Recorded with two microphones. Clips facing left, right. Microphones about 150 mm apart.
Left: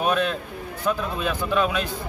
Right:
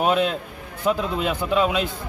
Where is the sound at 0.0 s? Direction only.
15° right (ahead or behind).